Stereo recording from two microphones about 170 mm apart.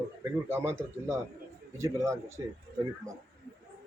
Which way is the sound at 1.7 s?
15° right (ahead or behind).